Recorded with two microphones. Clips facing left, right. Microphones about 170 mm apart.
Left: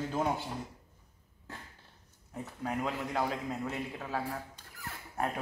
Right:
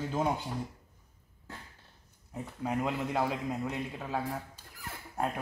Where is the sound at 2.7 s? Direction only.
20° right (ahead or behind).